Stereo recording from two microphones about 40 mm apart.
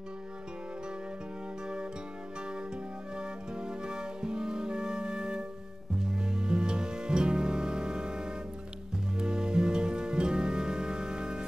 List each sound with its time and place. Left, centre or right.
2.5 s music: right